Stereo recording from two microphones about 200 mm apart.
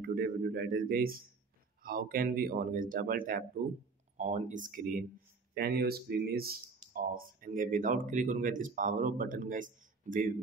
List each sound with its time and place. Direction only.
0.0 s a man's voice: 50° right (ahead or behind)